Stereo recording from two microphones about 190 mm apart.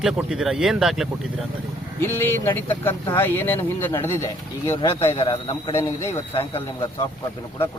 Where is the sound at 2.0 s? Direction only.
10° left (ahead or behind).